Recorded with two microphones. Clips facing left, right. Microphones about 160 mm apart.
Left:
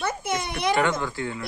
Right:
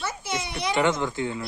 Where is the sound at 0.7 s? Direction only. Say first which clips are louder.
Right 2 dB; 20° right (ahead or behind).